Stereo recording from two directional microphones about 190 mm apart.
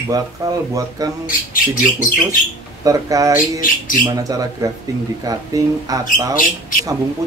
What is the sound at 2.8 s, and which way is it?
Speech, 15° right (ahead or behind).